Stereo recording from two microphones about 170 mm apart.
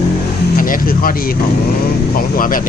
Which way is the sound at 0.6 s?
55° left (ahead or behind).